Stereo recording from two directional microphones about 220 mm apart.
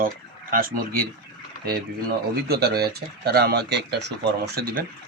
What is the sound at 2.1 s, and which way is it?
Speech, 45° right (ahead or behind).